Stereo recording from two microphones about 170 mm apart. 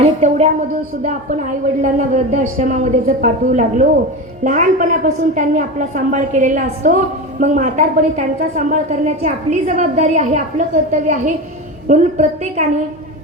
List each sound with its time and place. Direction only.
0.0 s a woman's voice: 40° right (ahead or behind)